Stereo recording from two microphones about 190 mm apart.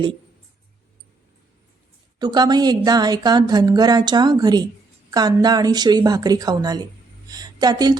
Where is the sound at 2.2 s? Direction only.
20° right (ahead or behind).